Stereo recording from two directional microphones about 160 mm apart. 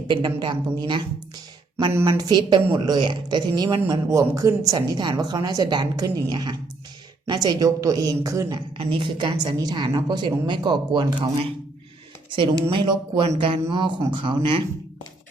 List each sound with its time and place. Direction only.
0.1 s a woman's voice: 25° right (ahead or behind)
2.0 s a woman's voice: 25° right (ahead or behind)
12.7 s speech: 35° right (ahead or behind)